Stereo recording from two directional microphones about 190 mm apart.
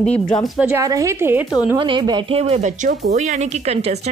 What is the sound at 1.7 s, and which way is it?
Speech, 25° right (ahead or behind).